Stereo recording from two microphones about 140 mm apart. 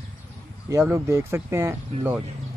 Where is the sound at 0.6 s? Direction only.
20° right (ahead or behind).